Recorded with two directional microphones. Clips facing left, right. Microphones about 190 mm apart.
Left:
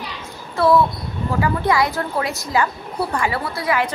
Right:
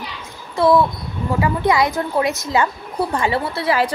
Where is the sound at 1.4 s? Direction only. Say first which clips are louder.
Right 1 dB; 20° right (ahead or behind).